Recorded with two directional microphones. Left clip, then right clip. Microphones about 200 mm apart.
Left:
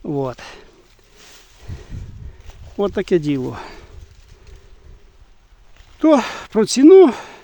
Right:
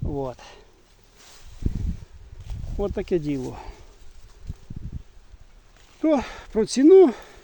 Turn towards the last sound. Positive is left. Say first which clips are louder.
# left 5 dB
turn(degrees=40)  # may be behind; listen again after turning